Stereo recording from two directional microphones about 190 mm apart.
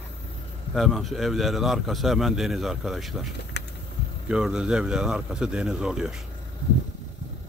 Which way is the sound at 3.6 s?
60° left (ahead or behind).